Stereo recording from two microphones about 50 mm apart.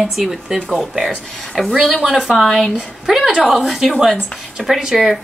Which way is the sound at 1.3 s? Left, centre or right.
Centre.